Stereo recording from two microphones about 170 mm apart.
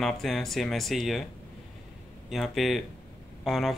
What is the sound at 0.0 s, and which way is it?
Speech, centre (ahead or behind).